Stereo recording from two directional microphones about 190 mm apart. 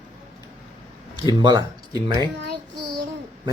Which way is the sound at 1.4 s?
20° right (ahead or behind).